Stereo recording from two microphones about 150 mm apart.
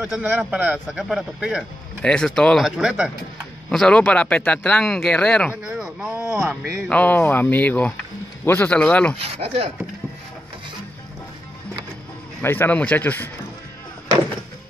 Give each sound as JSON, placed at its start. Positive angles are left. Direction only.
{"t": 0.0, "sound": "a man's voice", "side_deg": -5}
{"t": 2.0, "sound": "a man's voice", "side_deg": 5}
{"t": 5.7, "sound": "a sound", "side_deg": -5}
{"t": 6.5, "sound": "speech", "side_deg": 5}
{"t": 9.2, "sound": "speech", "side_deg": -40}
{"t": 12.4, "sound": "speech", "side_deg": 15}